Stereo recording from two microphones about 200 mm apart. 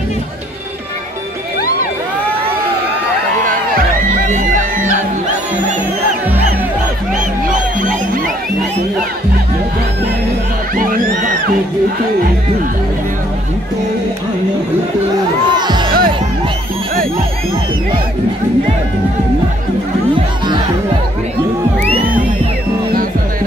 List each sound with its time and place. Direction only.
4.3 s music: 40° right (ahead or behind)
7.4 s music: 40° right (ahead or behind)
15.5 s music: 20° right (ahead or behind)